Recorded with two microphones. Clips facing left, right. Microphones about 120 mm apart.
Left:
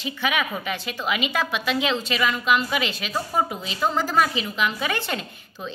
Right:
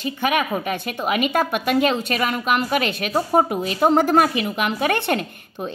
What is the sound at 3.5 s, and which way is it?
A woman's voice, 55° right (ahead or behind).